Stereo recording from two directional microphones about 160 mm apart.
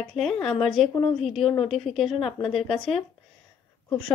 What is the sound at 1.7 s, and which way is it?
Speech, centre (ahead or behind).